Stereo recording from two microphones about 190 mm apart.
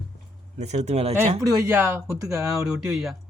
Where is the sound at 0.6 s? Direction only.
35° right (ahead or behind).